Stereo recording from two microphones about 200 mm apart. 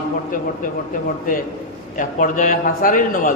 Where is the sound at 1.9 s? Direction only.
40° left (ahead or behind).